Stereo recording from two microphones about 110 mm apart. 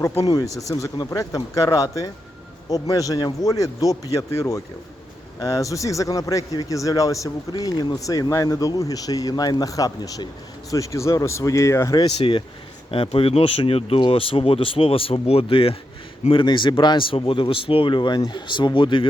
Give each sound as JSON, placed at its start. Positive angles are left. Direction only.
{"t": 0.3, "sound": "speech", "side_deg": 35}
{"t": 12.1, "sound": "speech", "side_deg": 55}
{"t": 14.0, "sound": "speech", "side_deg": 55}